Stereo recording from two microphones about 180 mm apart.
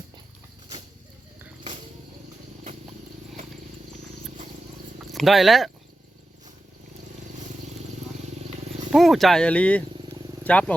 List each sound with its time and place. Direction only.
5.1 s speech: centre (ahead or behind)
8.9 s speech: centre (ahead or behind)
9.9 s a sound: 25° right (ahead or behind)
10.4 s speech: 10° left (ahead or behind)